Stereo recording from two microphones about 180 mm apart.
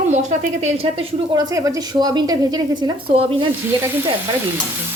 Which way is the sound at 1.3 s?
20° right (ahead or behind).